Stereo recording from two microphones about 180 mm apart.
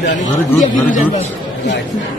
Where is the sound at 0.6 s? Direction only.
45° left (ahead or behind).